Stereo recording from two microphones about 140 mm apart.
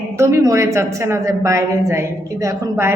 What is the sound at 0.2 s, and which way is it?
A woman's voice, 20° right (ahead or behind).